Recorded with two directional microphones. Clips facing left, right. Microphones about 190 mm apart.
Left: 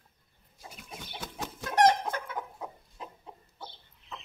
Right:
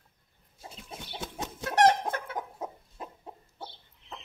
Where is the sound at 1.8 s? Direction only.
70° right (ahead or behind).